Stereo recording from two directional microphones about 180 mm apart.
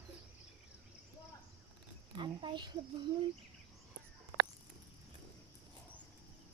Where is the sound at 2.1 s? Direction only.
25° right (ahead or behind).